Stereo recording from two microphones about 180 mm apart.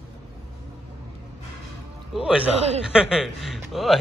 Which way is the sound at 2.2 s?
5° right (ahead or behind).